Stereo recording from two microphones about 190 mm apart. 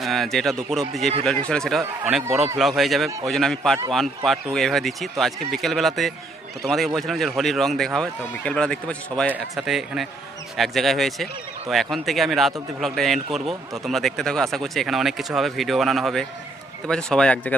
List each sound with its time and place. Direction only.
0.0 s a man's voice: centre (ahead or behind)
2.3 s a man's voice: 35° right (ahead or behind)
2.6 s a man's voice: centre (ahead or behind)